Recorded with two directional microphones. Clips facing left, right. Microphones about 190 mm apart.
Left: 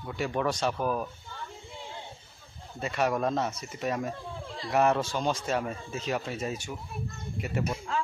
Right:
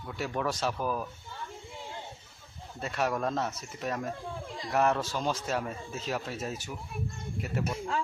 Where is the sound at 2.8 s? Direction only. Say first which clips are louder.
Left 3 dB; centre (ahead or behind).